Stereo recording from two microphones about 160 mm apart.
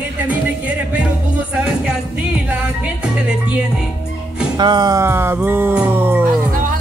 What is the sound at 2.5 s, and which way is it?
Music, 5° right (ahead or behind).